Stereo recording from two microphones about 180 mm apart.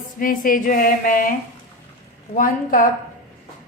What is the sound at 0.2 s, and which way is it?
A woman's voice, 50° left (ahead or behind).